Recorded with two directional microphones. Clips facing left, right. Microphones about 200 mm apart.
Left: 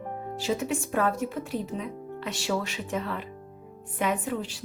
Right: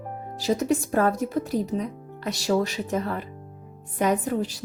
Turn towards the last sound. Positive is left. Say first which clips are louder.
# right 5 dB
turn(degrees=-40)  # may be behind; listen again after turning